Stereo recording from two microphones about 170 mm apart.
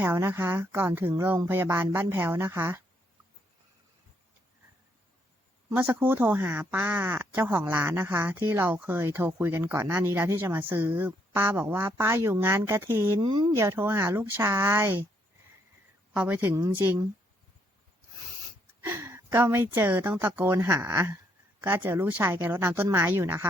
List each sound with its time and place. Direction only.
0.0 s speech: 15° right (ahead or behind)
5.6 s speech: 10° right (ahead or behind)
13.2 s speech: 30° right (ahead or behind)
13.6 s speech: 15° right (ahead or behind)
16.1 s speech: 10° right (ahead or behind)
18.9 s speech: 15° right (ahead or behind)